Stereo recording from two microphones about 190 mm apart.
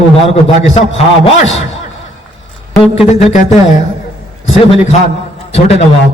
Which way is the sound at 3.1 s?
35° left (ahead or behind).